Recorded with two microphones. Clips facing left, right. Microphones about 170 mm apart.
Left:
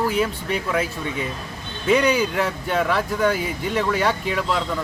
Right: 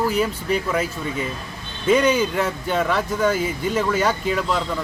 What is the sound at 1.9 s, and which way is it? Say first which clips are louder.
Speech: right 1 dB; centre (ahead or behind).